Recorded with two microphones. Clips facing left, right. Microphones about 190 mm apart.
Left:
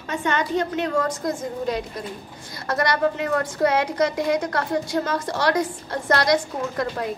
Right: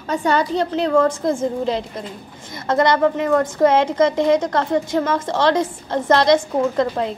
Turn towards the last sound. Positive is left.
turn(degrees=-25)  # may be behind; listen again after turning